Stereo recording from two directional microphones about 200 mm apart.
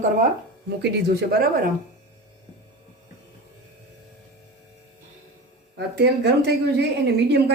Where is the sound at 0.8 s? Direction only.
50° right (ahead or behind).